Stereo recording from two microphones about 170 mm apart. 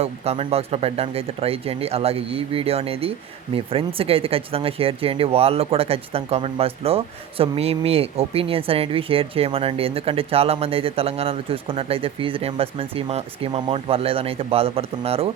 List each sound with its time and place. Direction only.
0.0 s speech: 35° right (ahead or behind)